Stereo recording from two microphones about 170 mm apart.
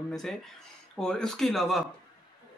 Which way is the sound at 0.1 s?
Centre (ahead or behind).